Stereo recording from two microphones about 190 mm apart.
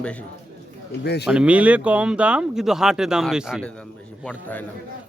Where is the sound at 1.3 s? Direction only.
5° right (ahead or behind).